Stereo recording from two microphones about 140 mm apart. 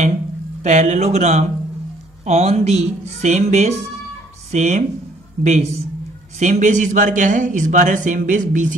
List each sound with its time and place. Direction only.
0.7 s speech: 55° right (ahead or behind)